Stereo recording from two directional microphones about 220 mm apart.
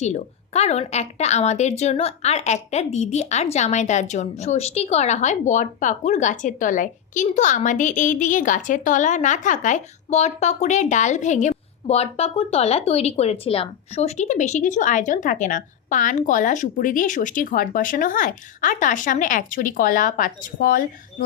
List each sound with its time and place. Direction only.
0.0 s a woman's voice: 30° left (ahead or behind)